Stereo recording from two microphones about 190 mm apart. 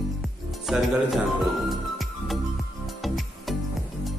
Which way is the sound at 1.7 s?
Centre (ahead or behind).